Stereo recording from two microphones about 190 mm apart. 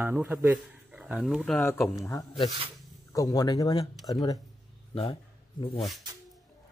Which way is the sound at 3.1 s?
20° left (ahead or behind).